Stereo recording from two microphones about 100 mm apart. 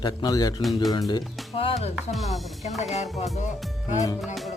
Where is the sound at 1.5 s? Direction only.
80° left.